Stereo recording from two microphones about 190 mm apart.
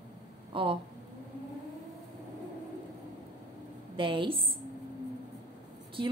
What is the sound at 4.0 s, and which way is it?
Speech, 25° right (ahead or behind).